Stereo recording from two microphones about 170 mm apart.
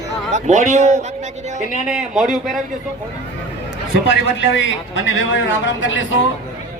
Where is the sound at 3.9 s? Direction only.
90° left.